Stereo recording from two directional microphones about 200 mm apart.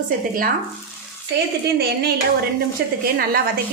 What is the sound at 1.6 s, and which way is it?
A woman's voice, 55° right (ahead or behind).